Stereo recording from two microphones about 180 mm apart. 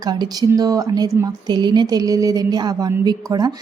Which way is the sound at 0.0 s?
20° right (ahead or behind).